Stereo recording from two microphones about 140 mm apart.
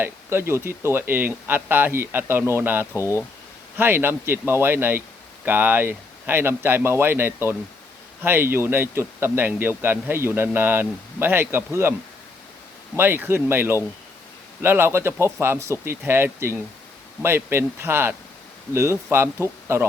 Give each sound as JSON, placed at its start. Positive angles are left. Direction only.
{"t": 0.0, "sound": "a man's voice", "side_deg": -15}
{"t": 13.0, "sound": "a man's voice", "side_deg": -15}